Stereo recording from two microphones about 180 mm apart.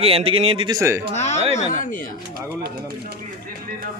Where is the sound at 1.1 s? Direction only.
40° left (ahead or behind).